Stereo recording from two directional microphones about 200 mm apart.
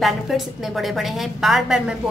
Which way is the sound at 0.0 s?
Centre (ahead or behind).